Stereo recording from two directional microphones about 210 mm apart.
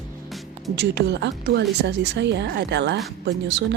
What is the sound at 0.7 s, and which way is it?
A woman's voice, 55° right (ahead or behind).